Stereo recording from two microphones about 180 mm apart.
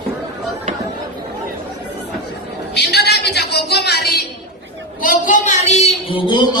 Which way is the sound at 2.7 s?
70° left (ahead or behind).